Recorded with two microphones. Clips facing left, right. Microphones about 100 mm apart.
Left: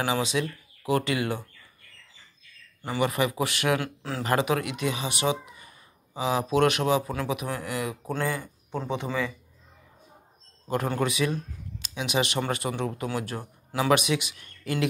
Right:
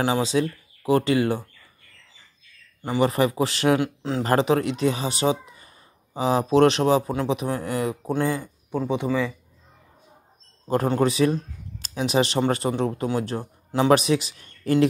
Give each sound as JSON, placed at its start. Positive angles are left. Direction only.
{"t": 0.0, "sound": "a man's voice", "side_deg": -30}
{"t": 3.0, "sound": "a man's voice", "side_deg": -35}
{"t": 3.8, "sound": "speech", "side_deg": -20}
{"t": 4.2, "sound": "a man's voice", "side_deg": -35}
{"t": 8.1, "sound": "speech", "side_deg": -20}
{"t": 10.9, "sound": "a man's voice", "side_deg": -35}